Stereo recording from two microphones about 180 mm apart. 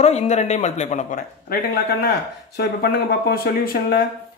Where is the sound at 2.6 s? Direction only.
65° left (ahead or behind).